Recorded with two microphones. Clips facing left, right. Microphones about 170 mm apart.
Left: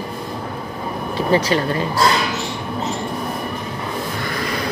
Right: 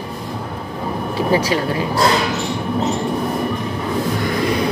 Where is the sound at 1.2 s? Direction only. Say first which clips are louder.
Even; 10° right (ahead or behind).